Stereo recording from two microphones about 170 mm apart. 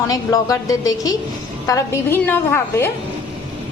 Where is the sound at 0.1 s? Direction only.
20° left (ahead or behind).